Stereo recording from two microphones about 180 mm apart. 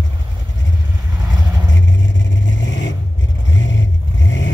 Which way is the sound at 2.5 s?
90° left.